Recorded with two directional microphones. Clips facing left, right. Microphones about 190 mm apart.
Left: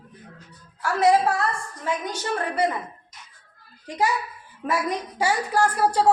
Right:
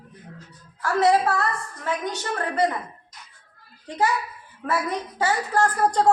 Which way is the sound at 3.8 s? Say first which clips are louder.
Right 1 dB; 15° left (ahead or behind).